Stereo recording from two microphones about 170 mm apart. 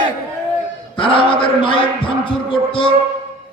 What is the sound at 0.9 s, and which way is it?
A man's voice, 30° left (ahead or behind).